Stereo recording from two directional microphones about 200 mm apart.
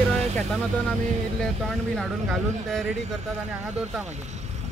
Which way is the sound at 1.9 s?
Centre (ahead or behind).